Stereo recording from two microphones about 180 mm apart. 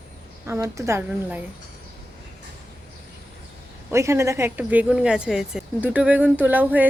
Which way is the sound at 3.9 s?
15° right (ahead or behind).